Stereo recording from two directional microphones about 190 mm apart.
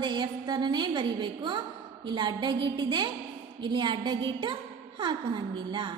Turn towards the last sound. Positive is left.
turn(degrees=-25)  # may be behind; listen again after turning